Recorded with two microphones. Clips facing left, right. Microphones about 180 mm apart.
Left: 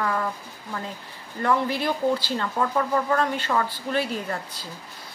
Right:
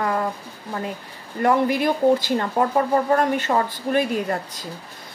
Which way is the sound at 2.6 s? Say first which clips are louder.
Right 4 dB; 30° right (ahead or behind).